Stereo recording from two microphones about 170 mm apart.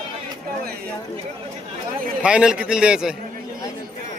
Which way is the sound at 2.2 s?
5° right (ahead or behind).